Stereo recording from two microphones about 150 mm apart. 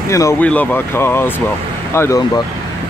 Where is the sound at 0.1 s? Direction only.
20° left (ahead or behind).